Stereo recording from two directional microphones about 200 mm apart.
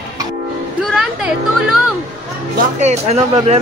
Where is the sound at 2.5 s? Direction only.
35° right (ahead or behind).